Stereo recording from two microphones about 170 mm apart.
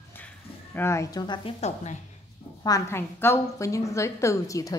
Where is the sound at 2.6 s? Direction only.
15° left (ahead or behind).